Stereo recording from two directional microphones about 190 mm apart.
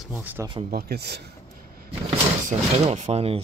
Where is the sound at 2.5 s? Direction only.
35° right (ahead or behind).